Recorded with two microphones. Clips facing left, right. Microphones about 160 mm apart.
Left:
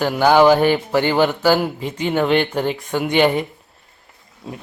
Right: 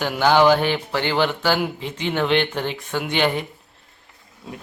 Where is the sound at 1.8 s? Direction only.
45° left (ahead or behind).